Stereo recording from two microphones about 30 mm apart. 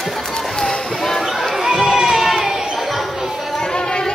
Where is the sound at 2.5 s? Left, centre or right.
Centre.